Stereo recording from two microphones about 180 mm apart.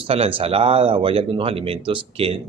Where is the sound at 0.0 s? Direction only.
30° right (ahead or behind).